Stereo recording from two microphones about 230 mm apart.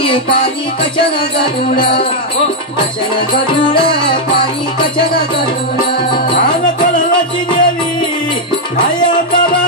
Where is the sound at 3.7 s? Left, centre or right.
Left.